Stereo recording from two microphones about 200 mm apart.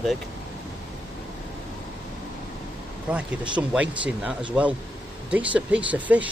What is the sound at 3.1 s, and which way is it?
Speech, 5° right (ahead or behind).